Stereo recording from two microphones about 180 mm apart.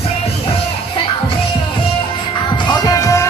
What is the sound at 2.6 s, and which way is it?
Music, 20° left (ahead or behind).